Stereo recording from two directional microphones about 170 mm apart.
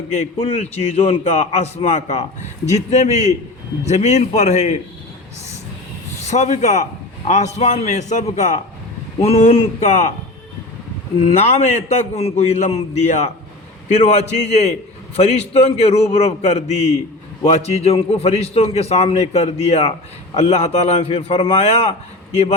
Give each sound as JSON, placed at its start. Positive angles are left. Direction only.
{"t": 0.3, "sound": "a man's voice", "side_deg": 35}
{"t": 6.2, "sound": "a man's voice", "side_deg": 45}
{"t": 11.2, "sound": "a man's voice", "side_deg": 40}